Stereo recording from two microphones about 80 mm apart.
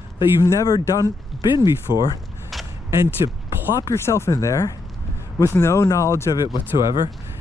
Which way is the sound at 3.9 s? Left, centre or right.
Left.